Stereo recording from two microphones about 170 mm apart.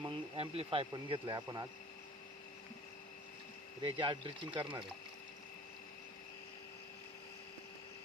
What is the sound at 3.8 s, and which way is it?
Speech, 30° right (ahead or behind).